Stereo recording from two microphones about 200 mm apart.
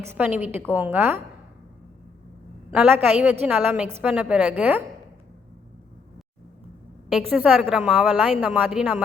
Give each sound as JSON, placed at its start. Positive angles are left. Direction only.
{"t": 0.0, "sound": "a woman's voice", "side_deg": -10}
{"t": 2.7, "sound": "a woman's voice", "side_deg": -10}
{"t": 7.1, "sound": "a woman's voice", "side_deg": -5}